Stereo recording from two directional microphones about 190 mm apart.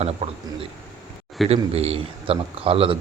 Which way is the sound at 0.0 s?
30° right (ahead or behind).